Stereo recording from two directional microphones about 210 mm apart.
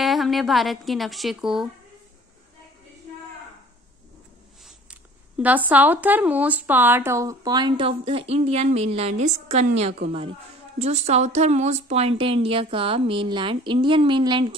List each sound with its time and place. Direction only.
0.0 s a woman's voice: centre (ahead or behind)
5.4 s a woman's voice: 5° right (ahead or behind); by 14.6 s 25° right (ahead or behind)